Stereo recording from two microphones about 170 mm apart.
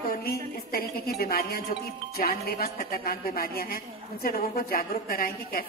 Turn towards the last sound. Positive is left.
turn(degrees=60)  # may be behind; listen again after turning